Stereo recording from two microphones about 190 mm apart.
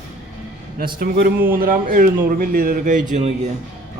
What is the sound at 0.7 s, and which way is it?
Speech, 50° right (ahead or behind).